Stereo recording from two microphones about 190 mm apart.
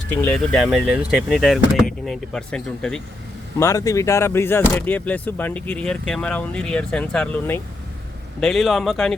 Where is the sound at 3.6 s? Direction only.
15° left (ahead or behind); by 9.1 s centre (ahead or behind).